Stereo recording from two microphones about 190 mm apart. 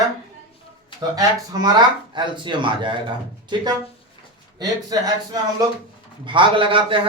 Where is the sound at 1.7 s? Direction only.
25° right (ahead or behind).